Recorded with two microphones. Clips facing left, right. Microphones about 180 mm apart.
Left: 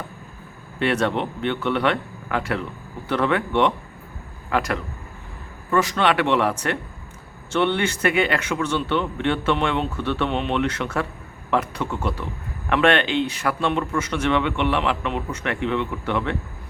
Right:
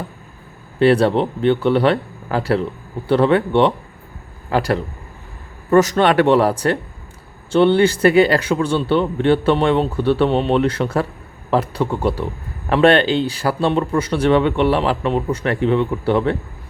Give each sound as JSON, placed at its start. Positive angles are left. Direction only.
{"t": 0.8, "sound": "a man's voice", "side_deg": -35}